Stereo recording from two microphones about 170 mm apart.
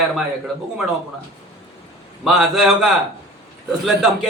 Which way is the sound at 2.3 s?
Centre (ahead or behind).